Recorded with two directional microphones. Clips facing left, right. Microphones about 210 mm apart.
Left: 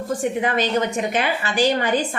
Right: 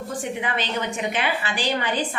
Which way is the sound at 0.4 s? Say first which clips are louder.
Left 8 dB; 40° left (ahead or behind).